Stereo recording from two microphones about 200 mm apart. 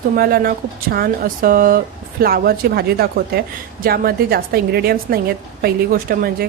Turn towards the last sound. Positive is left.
turn(degrees=-45)  # may be behind; listen again after turning